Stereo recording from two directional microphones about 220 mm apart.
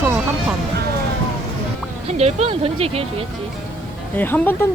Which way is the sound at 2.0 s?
30° right (ahead or behind).